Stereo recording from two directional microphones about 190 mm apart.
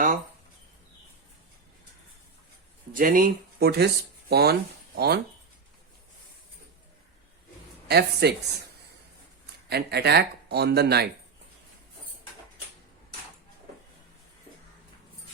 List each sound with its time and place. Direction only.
2.9 s speech: 45° right (ahead or behind)
7.9 s speech: 55° right (ahead or behind)
9.6 s speech: 60° right (ahead or behind)